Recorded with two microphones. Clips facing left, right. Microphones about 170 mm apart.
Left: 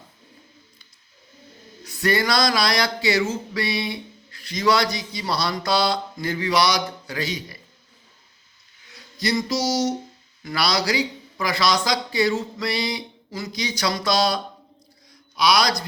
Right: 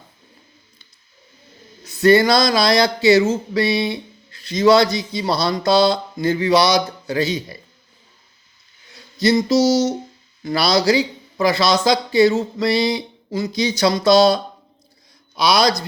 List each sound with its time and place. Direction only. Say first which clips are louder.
1.8 s speech: right 9 dB; 25° right (ahead or behind)
9.1 s speech: right 8 dB; 25° right (ahead or behind)